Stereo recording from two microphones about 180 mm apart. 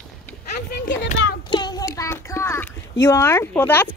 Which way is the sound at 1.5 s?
20° left (ahead or behind).